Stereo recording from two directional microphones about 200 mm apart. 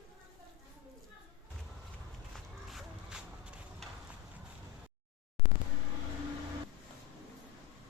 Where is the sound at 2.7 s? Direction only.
5° right (ahead or behind).